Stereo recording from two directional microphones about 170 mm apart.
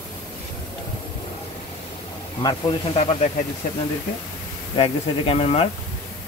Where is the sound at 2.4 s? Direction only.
35° left (ahead or behind).